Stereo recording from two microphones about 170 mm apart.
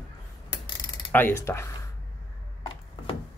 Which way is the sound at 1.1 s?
15° left (ahead or behind).